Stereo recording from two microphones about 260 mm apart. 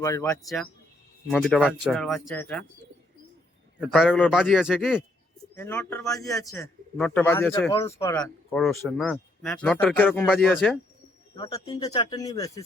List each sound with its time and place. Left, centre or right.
0.0 s speech: centre
0.4 s speech: centre
3.8 s speech: centre
5.5 s speech: centre
11.3 s speech: centre